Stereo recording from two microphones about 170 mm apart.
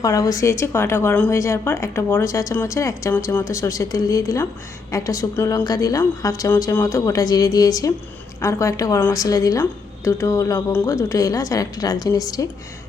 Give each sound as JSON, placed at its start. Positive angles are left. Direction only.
{"t": 0.0, "sound": "a woman's voice", "side_deg": 20}